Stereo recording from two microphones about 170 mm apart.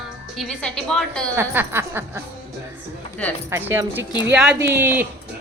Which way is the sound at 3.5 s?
15° right (ahead or behind).